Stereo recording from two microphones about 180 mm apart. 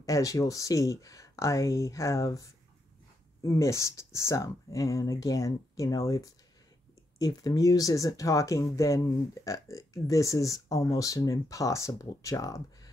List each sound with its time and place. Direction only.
0.0 s speech: 20° left (ahead or behind)
3.4 s speech: 15° left (ahead or behind)